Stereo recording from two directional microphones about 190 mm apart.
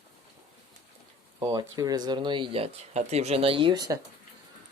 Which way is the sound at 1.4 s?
20° right (ahead or behind).